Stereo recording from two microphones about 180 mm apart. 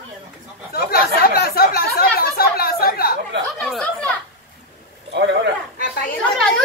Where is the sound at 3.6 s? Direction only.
5° left (ahead or behind).